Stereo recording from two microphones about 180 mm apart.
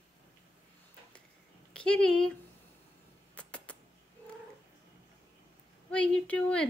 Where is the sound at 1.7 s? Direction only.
5° left (ahead or behind).